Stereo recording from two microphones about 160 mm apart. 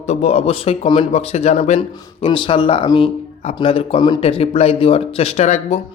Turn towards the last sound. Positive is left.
turn(degrees=45)  # may be behind; listen again after turning